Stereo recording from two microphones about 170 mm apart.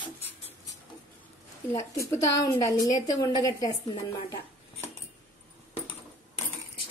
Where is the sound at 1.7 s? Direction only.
15° left (ahead or behind).